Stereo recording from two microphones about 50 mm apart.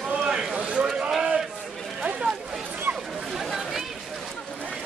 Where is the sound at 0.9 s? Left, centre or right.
Centre.